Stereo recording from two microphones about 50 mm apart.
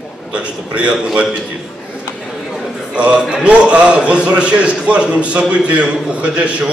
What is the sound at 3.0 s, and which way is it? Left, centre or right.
A man's voice, right.